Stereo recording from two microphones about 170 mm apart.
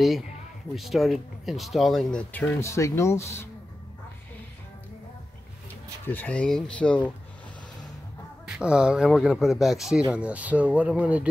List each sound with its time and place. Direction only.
0.7 s speech: centre (ahead or behind)
2.6 s speech: 15° left (ahead or behind)
6.0 s speech: 10° left (ahead or behind)
8.5 s speech: 5° right (ahead or behind)